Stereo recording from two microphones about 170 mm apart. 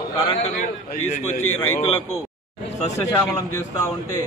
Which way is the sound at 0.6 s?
55° left (ahead or behind).